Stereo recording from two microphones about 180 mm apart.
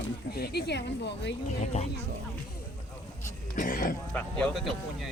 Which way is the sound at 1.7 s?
35° left (ahead or behind).